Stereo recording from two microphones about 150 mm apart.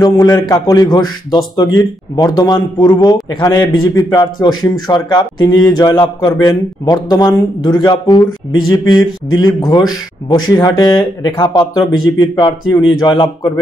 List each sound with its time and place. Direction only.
0.0 s a man's voice: 25° left (ahead or behind)